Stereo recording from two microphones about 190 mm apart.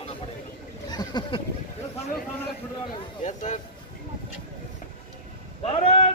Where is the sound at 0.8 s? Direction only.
20° left (ahead or behind).